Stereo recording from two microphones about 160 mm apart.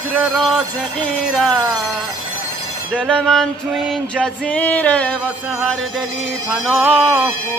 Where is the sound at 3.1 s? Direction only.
Centre (ahead or behind).